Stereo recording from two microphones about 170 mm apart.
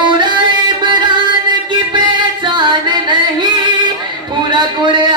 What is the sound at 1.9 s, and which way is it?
Music, 25° right (ahead or behind).